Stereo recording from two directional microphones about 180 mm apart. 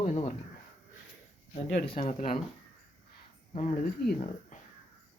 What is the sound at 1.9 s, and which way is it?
Speech, 45° left (ahead or behind).